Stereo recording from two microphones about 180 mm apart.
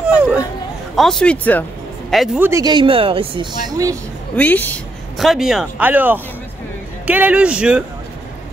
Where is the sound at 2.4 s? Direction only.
20° right (ahead or behind).